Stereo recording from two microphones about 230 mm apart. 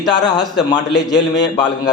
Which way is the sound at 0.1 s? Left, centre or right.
Centre.